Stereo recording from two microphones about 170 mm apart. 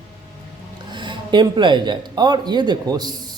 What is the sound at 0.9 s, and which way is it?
Speech, 25° right (ahead or behind).